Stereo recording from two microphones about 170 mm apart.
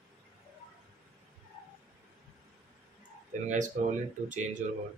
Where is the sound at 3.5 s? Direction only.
45° right (ahead or behind).